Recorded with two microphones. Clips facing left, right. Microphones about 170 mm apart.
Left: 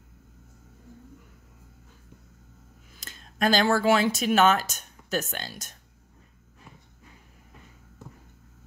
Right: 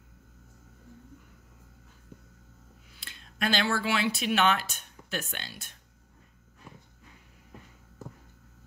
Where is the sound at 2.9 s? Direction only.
40° left (ahead or behind).